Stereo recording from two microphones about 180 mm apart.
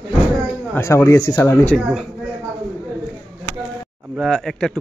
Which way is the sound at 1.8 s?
Centre (ahead or behind).